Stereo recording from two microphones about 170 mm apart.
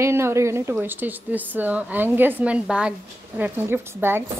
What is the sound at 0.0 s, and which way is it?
A woman's voice, 15° right (ahead or behind).